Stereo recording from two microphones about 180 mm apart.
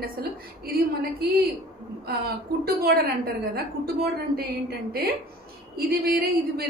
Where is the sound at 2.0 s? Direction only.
60° right (ahead or behind).